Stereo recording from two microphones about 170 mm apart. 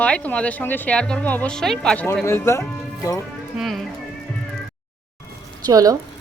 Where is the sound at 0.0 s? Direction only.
10° left (ahead or behind).